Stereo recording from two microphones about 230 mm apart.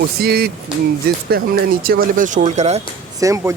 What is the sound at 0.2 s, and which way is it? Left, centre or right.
Speech, right.